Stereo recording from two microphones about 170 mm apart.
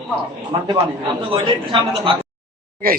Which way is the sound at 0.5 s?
25° right (ahead or behind).